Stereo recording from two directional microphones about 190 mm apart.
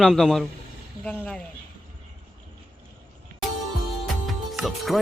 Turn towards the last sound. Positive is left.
turn(degrees=0)  # may be behind; listen again after turning